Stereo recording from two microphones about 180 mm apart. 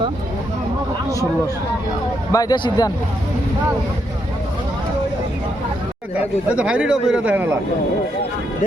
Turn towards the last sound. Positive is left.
turn(degrees=-10)  # may be behind; listen again after turning